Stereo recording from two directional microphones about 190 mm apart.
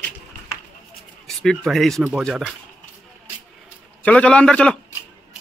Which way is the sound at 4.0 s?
5° left (ahead or behind).